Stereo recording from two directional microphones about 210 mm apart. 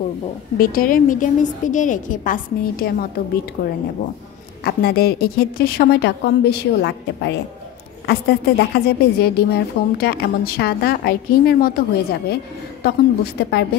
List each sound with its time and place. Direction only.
0.6 s a woman's voice: 40° left (ahead or behind)